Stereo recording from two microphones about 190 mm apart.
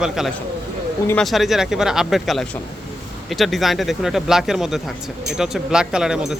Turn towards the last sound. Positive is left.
turn(degrees=-5)  # may be behind; listen again after turning